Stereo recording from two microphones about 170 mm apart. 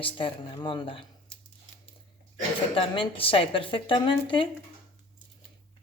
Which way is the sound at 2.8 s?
30° left (ahead or behind).